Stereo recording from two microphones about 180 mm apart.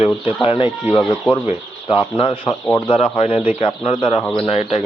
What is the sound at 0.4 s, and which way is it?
Speech, 30° left (ahead or behind).